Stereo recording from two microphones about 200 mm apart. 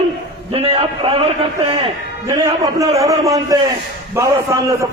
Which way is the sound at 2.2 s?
15° right (ahead or behind).